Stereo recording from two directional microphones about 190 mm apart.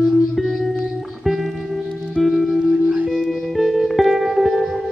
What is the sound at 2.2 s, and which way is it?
Music, centre (ahead or behind).